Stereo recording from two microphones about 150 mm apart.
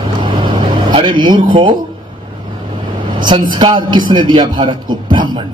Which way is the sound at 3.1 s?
30° right (ahead or behind).